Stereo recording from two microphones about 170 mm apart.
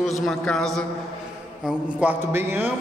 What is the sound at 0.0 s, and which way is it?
A man's voice, centre (ahead or behind).